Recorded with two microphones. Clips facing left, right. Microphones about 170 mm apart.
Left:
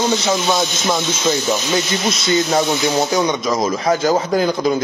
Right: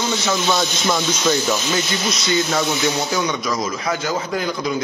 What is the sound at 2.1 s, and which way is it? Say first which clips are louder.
A man's voice: left 4 dB; 25° left (ahead or behind).